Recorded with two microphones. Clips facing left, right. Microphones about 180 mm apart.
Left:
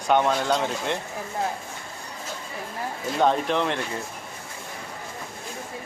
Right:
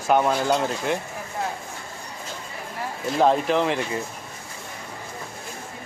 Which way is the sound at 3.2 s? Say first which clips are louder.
Right 2 dB; centre (ahead or behind).